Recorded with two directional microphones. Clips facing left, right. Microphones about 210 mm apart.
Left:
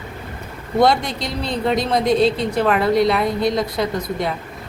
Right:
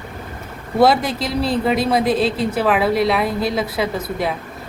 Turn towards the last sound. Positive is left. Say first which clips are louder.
# even
turn(degrees=-5)  # may be behind; listen again after turning